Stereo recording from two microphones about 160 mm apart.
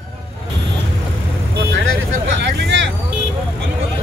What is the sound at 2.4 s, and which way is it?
Vehicle, 90° right.